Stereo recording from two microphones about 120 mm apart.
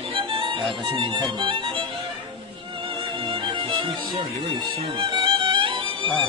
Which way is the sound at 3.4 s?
40° right (ahead or behind).